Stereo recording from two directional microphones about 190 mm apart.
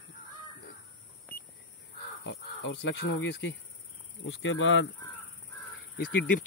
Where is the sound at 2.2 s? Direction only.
75° left (ahead or behind).